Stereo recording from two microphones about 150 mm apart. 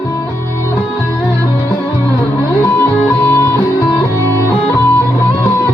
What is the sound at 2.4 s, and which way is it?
Music, 15° left (ahead or behind).